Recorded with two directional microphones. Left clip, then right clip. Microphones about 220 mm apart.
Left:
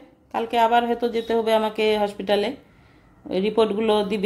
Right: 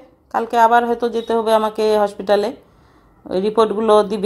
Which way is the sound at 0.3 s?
20° right (ahead or behind).